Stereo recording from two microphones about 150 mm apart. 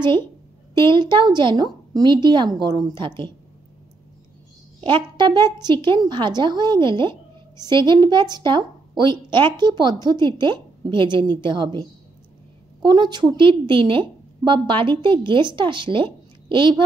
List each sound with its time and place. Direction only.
0.7 s a woman's voice: 30° right (ahead or behind)
4.7 s a woman's voice: 30° right (ahead or behind)